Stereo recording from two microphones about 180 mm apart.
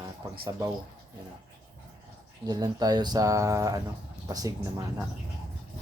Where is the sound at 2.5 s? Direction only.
20° right (ahead or behind).